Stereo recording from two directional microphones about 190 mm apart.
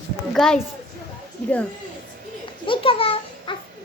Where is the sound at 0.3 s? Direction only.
5° left (ahead or behind).